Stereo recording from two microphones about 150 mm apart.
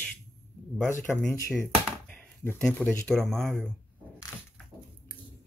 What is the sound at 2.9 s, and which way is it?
Speech, 5° left (ahead or behind).